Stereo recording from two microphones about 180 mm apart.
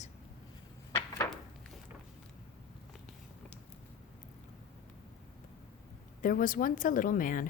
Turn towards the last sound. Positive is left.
turn(degrees=50)  # may be behind; listen again after turning